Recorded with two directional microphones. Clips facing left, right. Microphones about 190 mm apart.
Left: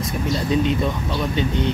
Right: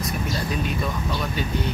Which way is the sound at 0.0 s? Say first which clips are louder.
Left 4 dB; 25° left (ahead or behind).